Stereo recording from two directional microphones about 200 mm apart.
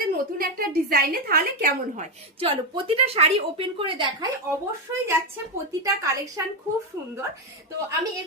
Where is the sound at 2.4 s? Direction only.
25° right (ahead or behind).